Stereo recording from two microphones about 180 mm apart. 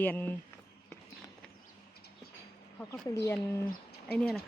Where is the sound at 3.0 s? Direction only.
15° left (ahead or behind).